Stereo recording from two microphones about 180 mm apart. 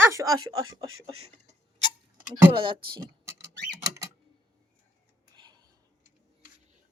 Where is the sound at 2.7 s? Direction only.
55° right (ahead or behind).